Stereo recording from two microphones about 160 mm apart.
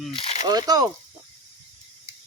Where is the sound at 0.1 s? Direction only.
35° left (ahead or behind).